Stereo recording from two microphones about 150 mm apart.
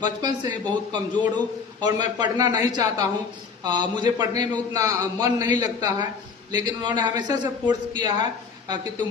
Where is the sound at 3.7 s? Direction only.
30° right (ahead or behind).